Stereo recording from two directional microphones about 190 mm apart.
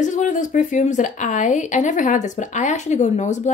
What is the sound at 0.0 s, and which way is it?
Speech, 40° left (ahead or behind).